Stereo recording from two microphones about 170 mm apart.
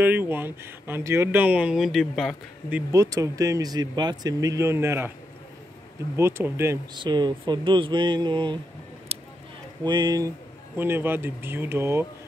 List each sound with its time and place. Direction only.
0.0 s speech: 10° right (ahead or behind)
2.9 s speech: 20° right (ahead or behind)
6.1 s speech: 15° right (ahead or behind)
7.0 s speech: 25° right (ahead or behind)
9.1 s a sound: 35° right (ahead or behind)
9.8 s speech: 25° right (ahead or behind)
10.8 s speech: 10° right (ahead or behind)